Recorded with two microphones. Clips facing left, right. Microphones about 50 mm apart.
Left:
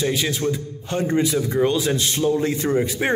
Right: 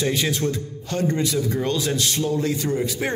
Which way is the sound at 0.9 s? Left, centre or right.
Left.